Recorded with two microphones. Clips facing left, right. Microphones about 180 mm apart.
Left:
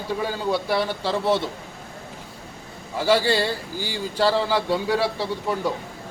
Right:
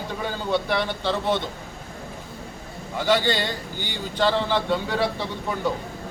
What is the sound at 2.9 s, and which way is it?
A man's voice, 5° left (ahead or behind).